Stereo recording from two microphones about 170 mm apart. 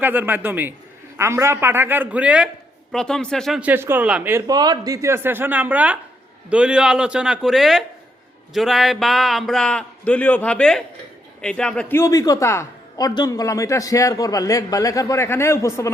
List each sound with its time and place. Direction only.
0.0 s speech: 10° right (ahead or behind)
2.9 s a man's voice: 5° left (ahead or behind)